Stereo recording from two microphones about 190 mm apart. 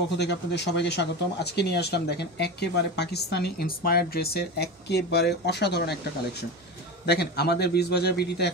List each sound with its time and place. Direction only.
0.2 s speech: 65° left (ahead or behind)